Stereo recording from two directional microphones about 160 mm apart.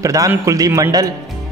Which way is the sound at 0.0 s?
20° right (ahead or behind).